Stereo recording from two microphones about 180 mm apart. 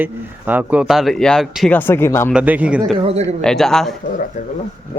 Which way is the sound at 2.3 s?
10° right (ahead or behind).